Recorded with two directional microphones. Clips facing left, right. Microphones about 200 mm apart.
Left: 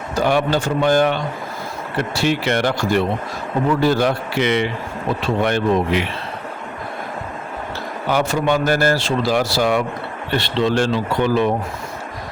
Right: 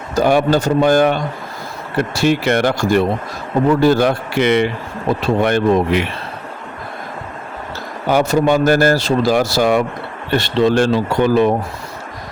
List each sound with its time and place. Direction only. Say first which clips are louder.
0.2 s speech: right 4 dB; 45° right (ahead or behind)
8.1 s speech: right 5 dB; 40° right (ahead or behind)